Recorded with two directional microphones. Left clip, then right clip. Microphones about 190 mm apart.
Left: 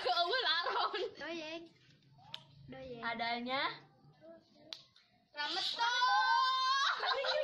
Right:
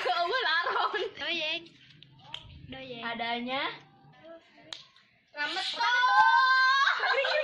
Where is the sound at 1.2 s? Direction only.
45° left (ahead or behind).